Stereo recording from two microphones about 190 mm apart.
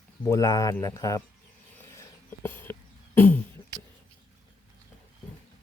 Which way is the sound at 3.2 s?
10° left (ahead or behind).